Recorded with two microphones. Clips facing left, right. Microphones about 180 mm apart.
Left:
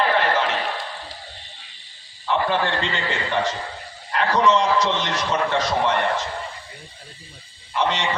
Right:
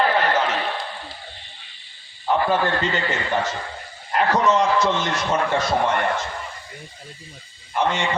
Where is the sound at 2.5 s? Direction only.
45° right (ahead or behind).